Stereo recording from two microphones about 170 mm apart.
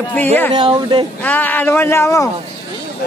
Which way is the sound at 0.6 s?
30° right (ahead or behind).